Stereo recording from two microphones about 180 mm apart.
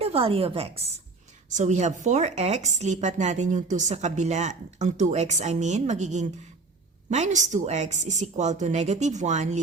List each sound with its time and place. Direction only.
0.0 s speech: 30° right (ahead or behind)